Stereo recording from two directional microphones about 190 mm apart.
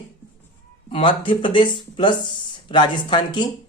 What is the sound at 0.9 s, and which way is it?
A woman's voice, 25° left (ahead or behind).